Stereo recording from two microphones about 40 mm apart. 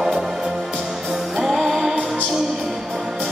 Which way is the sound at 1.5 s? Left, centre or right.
Centre.